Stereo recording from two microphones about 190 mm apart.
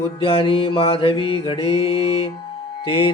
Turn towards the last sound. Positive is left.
turn(degrees=30)  # may be behind; listen again after turning